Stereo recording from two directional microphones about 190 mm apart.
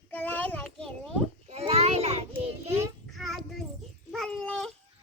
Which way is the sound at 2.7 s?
15° right (ahead or behind).